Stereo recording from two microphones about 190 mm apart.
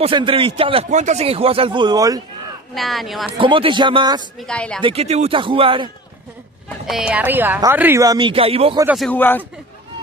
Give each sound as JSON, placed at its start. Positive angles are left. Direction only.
{"t": 0.0, "sound": "a man's voice", "side_deg": -25}
{"t": 2.7, "sound": "speech", "side_deg": 0}
{"t": 3.3, "sound": "a man's voice", "side_deg": -25}
{"t": 4.4, "sound": "speech", "side_deg": 5}
{"t": 4.8, "sound": "a man's voice", "side_deg": -30}
{"t": 6.9, "sound": "speech", "side_deg": -5}
{"t": 8.9, "sound": "speech", "side_deg": 5}